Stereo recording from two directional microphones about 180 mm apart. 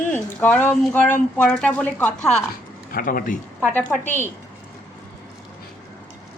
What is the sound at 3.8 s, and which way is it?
Speech, 10° left (ahead or behind).